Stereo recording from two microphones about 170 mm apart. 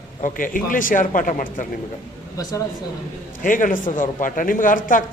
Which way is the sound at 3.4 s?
50° left (ahead or behind).